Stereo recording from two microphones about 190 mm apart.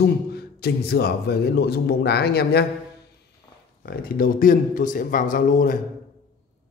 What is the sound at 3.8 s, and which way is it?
A man's voice, 50° left (ahead or behind).